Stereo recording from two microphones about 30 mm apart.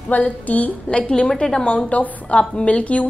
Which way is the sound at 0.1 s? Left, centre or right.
Left.